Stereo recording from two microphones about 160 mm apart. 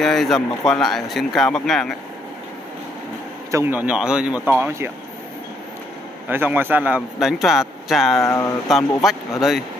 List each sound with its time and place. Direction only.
0.0 s speech: centre (ahead or behind)
3.5 s speech: 10° right (ahead or behind)
6.2 s speech: 10° right (ahead or behind)
8.2 s speech: 15° left (ahead or behind)
8.6 s speech: centre (ahead or behind)